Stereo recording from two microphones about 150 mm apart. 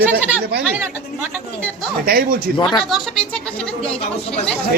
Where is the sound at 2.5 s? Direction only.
35° left (ahead or behind).